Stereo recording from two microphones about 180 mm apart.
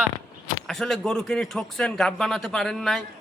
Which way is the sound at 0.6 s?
Centre (ahead or behind).